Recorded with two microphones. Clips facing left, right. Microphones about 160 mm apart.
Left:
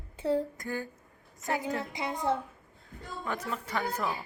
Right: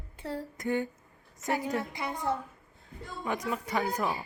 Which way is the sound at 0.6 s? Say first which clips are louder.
Right 6 dB; 20° right (ahead or behind).